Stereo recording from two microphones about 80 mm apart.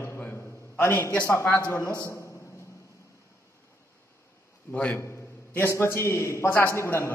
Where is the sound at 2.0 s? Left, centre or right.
Left.